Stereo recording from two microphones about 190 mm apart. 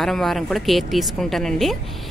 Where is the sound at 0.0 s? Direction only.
Centre (ahead or behind).